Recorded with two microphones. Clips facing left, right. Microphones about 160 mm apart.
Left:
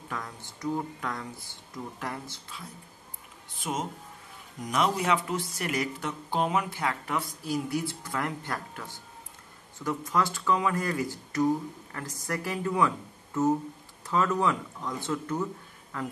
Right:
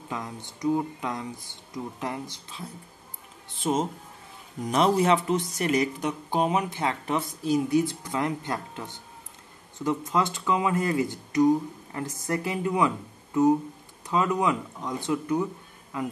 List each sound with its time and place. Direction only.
0.1 s speech: 20° right (ahead or behind)
3.6 s speech: 30° right (ahead or behind); by 15.4 s 15° right (ahead or behind)